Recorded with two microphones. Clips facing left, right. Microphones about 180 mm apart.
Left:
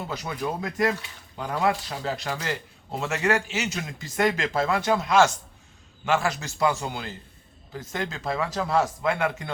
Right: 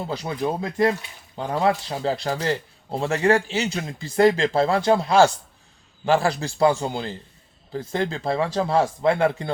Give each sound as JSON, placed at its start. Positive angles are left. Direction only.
{"t": 0.0, "sound": "speech", "side_deg": -30}